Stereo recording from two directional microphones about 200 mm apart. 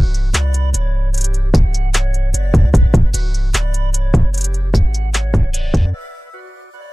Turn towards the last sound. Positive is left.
turn(degrees=0)  # may be behind; listen again after turning